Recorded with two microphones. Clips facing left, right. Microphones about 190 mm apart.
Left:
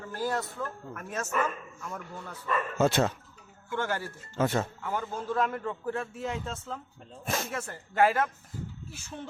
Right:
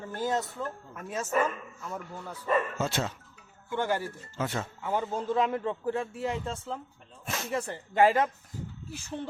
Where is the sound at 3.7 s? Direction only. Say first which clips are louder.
Right 2 dB; 15° right (ahead or behind).